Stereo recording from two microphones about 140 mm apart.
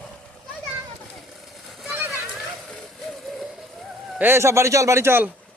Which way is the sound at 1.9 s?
15° right (ahead or behind).